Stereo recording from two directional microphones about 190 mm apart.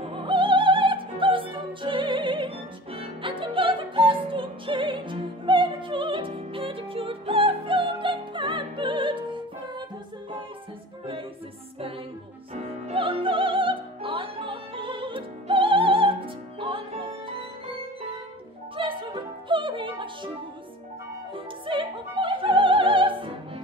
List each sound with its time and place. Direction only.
0.1 s opera: 25° right (ahead or behind)
12.5 s music: 30° right (ahead or behind)
18.8 s music: 25° right (ahead or behind)
21.6 s opera: 25° right (ahead or behind)